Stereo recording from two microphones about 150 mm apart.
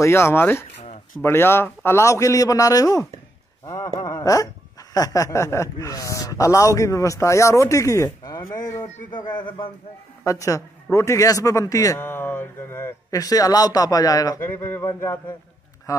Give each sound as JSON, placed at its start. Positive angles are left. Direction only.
{"t": 0.0, "sound": "a man's voice", "side_deg": 15}
{"t": 3.6, "sound": "a sound", "side_deg": 20}
{"t": 4.9, "sound": "a man's voice", "side_deg": 25}